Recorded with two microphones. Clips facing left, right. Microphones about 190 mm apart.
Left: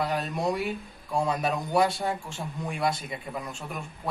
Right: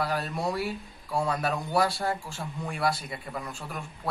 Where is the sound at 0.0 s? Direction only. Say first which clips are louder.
Left 1 dB; 20° left (ahead or behind).